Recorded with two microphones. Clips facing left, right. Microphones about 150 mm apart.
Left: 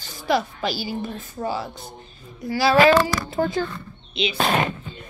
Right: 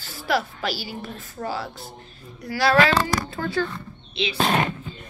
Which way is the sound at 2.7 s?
20° left (ahead or behind).